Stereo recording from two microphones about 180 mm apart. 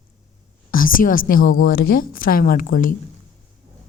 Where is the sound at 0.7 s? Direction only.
50° left (ahead or behind).